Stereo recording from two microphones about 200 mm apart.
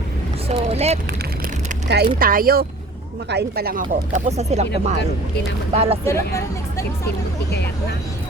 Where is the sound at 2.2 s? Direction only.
45° right (ahead or behind).